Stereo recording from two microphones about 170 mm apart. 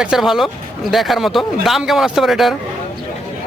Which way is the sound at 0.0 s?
5° right (ahead or behind).